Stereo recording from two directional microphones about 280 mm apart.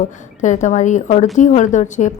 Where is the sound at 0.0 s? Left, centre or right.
Left.